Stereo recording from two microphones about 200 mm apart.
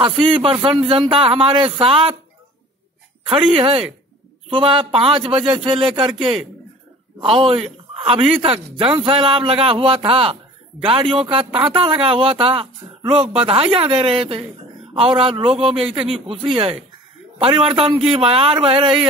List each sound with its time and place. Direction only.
0.0 s speech: 25° right (ahead or behind)
3.3 s a man's voice: 25° right (ahead or behind)